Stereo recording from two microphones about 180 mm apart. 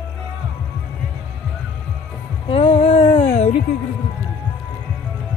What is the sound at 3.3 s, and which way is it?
Music, 35° left (ahead or behind).